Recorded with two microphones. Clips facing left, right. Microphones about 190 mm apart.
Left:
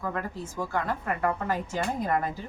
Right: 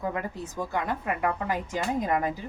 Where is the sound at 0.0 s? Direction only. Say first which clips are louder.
Right 1 dB; 15° right (ahead or behind).